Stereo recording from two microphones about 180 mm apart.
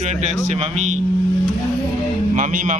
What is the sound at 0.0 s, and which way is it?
Speech, 40° right (ahead or behind).